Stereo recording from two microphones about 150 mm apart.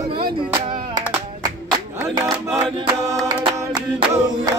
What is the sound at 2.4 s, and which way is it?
Music, centre (ahead or behind).